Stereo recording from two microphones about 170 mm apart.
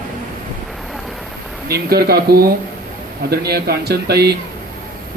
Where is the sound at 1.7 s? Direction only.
65° right (ahead or behind).